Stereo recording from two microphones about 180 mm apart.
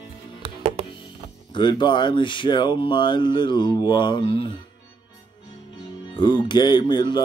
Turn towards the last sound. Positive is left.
turn(degrees=25)  # may be behind; listen again after turning